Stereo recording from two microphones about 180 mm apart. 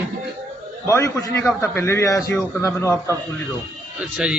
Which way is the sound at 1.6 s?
15° left (ahead or behind).